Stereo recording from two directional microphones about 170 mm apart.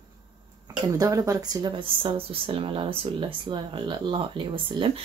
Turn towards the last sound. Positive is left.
turn(degrees=-30)  # may be behind; listen again after turning